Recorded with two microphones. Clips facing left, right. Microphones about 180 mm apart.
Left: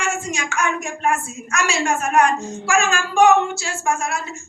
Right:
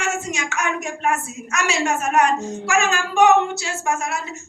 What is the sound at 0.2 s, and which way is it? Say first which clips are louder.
Speech: left 2 dB; 20° right (ahead or behind).